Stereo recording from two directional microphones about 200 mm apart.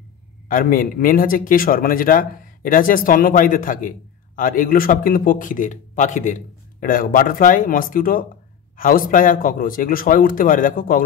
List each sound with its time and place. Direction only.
0.5 s a man's voice: 45° left (ahead or behind)